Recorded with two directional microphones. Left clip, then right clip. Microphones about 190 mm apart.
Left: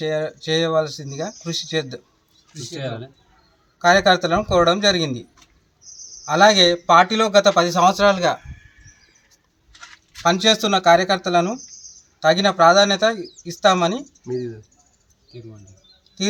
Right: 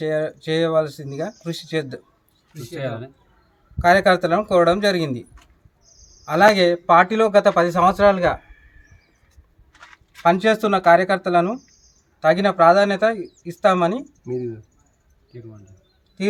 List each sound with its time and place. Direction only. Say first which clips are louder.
0.0 s speech: right 1 dB; centre (ahead or behind)
2.7 s speech: right 2 dB; 20° left (ahead or behind)
3.8 s speech: even; centre (ahead or behind)
6.2 s speech: left 1 dB; centre (ahead or behind)
10.2 s speech: even; centre (ahead or behind)